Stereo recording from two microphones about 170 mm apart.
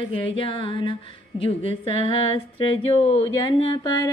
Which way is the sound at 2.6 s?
35° left (ahead or behind).